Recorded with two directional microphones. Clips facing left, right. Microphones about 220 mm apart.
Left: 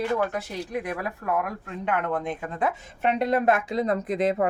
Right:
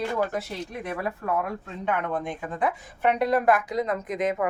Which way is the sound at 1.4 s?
20° right (ahead or behind).